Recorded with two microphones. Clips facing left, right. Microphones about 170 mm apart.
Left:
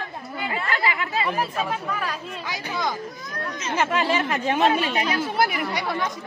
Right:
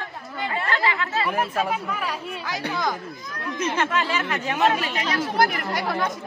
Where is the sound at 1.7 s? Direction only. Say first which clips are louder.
Right 1 dB; 10° right (ahead or behind).